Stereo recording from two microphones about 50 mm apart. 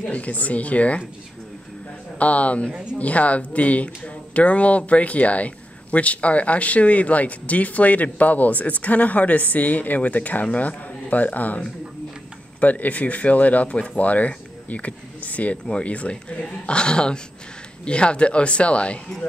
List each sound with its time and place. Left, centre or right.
0.1 s speech: left
2.1 s speech: left
2.7 s speech: centre
3.0 s speech: left